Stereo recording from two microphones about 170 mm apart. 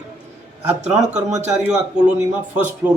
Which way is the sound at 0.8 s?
45° right (ahead or behind).